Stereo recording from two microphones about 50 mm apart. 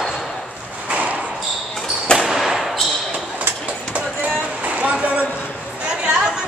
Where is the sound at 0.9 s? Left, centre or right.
Right.